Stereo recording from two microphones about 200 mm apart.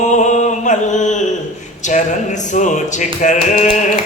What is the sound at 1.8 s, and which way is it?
Speech, 40° left (ahead or behind).